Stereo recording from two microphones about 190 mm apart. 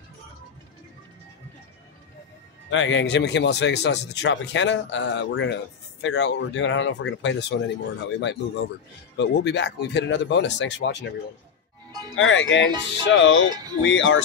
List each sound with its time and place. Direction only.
2.7 s speech: 75° left (ahead or behind)
9.1 s speech: 65° left (ahead or behind)
12.2 s speech: 90° left